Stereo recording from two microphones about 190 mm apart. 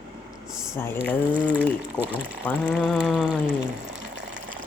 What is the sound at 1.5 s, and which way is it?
Speech, 10° right (ahead or behind).